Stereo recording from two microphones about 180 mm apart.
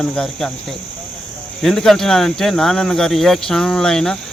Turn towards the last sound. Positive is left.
turn(degrees=5)  # may be behind; listen again after turning